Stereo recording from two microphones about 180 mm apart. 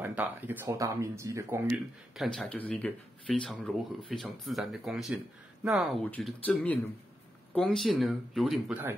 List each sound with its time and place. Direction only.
0.0 s speech: 10° right (ahead or behind)
2.1 s speech: centre (ahead or behind)
6.0 s speech: 10° left (ahead or behind); by 8.9 s 5° right (ahead or behind)